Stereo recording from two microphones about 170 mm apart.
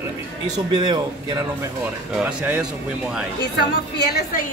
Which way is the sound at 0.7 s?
25° right (ahead or behind).